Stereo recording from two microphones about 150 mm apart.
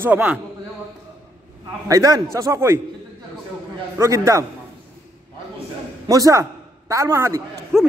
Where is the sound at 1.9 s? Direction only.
25° right (ahead or behind).